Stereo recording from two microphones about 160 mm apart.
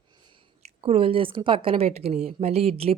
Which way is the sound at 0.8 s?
35° right (ahead or behind).